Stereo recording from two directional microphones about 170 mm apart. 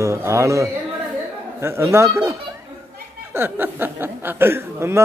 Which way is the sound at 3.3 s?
10° right (ahead or behind).